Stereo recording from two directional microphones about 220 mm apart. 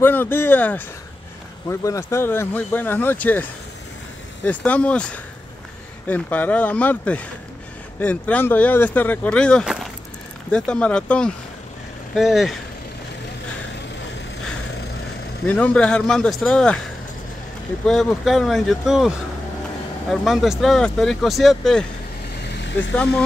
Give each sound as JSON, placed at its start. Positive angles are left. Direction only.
{"t": 0.0, "sound": "speech", "side_deg": 10}
{"t": 4.5, "sound": "speech", "side_deg": 5}
{"t": 15.4, "sound": "speech", "side_deg": 5}
{"t": 17.8, "sound": "speech", "side_deg": 0}
{"t": 22.4, "sound": "vehicle", "side_deg": 55}